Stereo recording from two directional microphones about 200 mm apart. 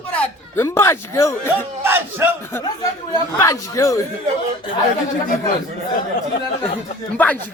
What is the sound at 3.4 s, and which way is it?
Speech, 15° left (ahead or behind).